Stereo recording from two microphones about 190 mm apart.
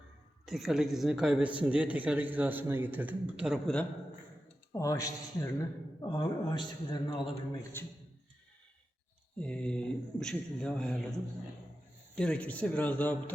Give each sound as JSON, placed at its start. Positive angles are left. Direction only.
{"t": 0.4, "sound": "speech", "side_deg": 0}
{"t": 4.7, "sound": "a man's voice", "side_deg": 15}
{"t": 9.4, "sound": "speech", "side_deg": 5}
{"t": 12.1, "sound": "a man's voice", "side_deg": 5}